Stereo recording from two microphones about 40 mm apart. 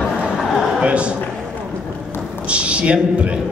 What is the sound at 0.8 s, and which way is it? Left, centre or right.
Speech, right.